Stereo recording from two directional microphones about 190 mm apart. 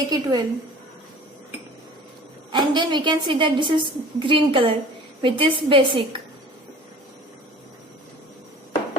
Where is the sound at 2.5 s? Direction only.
25° right (ahead or behind).